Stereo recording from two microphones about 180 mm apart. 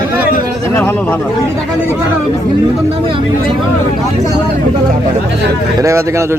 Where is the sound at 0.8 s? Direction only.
10° left (ahead or behind).